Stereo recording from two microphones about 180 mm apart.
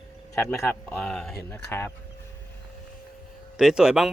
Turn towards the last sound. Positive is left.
turn(degrees=-5)  # may be behind; listen again after turning